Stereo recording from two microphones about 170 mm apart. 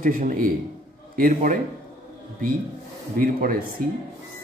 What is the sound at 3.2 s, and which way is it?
Speech, 60° right (ahead or behind).